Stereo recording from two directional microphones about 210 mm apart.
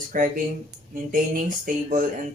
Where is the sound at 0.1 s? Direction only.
40° right (ahead or behind).